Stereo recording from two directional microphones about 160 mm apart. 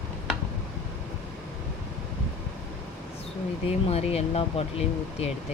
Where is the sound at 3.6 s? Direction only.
40° left (ahead or behind).